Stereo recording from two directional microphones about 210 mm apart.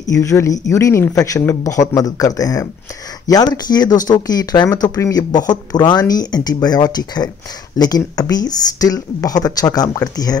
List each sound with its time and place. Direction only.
0.0 s speech: 15° left (ahead or behind)